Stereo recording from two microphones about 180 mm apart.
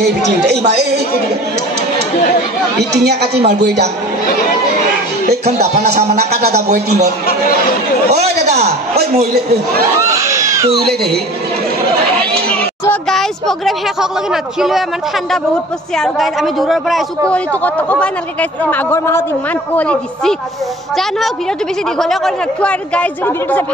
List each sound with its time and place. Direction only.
0.0 s speech: 65° right (ahead or behind)
2.8 s speech: 65° right (ahead or behind)
6.7 s a man's voice: 40° right (ahead or behind)
8.6 s speech: 60° right (ahead or behind)
10.0 s a sound: 15° right (ahead or behind)
10.7 s speech: 60° right (ahead or behind)
12.4 s a man's voice: 5° left (ahead or behind)
16.0 s a man's voice: centre (ahead or behind)
21.9 s speech: centre (ahead or behind)